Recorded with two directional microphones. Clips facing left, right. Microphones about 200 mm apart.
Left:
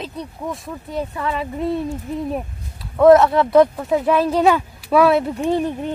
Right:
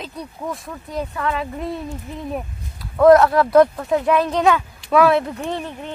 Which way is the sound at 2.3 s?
Centre (ahead or behind).